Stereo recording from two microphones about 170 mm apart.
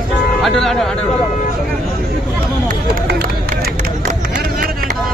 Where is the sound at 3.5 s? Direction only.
55° right (ahead or behind).